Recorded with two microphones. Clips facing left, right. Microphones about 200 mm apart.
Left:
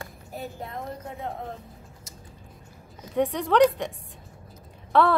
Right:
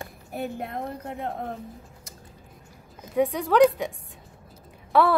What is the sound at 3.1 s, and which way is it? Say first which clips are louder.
Speech: right 1 dB; centre (ahead or behind).